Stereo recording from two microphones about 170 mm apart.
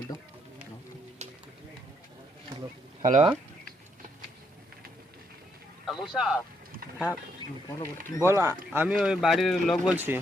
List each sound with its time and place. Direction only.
3.0 s speech: 50° right (ahead or behind)
5.8 s vehicle: centre (ahead or behind)
7.7 s speech: 20° left (ahead or behind)
8.3 s speech: 15° right (ahead or behind)
9.0 s speech: centre (ahead or behind)
9.9 s speech: 10° right (ahead or behind)